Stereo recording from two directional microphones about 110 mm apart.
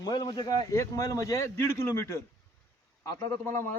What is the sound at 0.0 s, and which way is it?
Speech, 40° left (ahead or behind).